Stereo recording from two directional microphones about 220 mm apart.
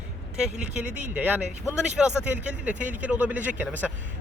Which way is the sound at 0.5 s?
35° right (ahead or behind).